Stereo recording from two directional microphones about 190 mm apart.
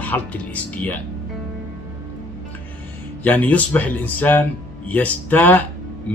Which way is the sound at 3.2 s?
10° left (ahead or behind).